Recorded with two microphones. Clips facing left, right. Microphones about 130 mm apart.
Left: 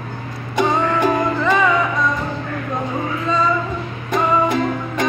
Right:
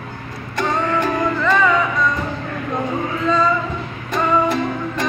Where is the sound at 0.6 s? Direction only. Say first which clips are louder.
Left 3 dB; 15° left (ahead or behind).